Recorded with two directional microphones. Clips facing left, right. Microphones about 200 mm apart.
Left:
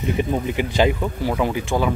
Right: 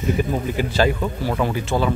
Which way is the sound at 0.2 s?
15° left (ahead or behind).